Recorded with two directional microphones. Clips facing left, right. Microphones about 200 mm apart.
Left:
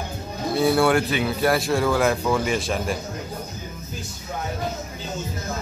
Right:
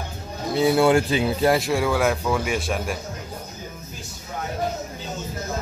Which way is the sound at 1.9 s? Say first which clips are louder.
Left 3 dB; centre (ahead or behind).